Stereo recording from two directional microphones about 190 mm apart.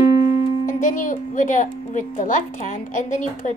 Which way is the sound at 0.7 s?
45° left (ahead or behind).